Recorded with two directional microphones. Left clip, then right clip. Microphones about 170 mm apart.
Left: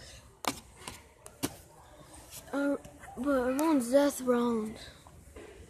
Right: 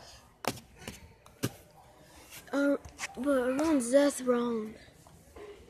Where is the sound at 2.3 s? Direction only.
20° right (ahead or behind); by 4.6 s centre (ahead or behind).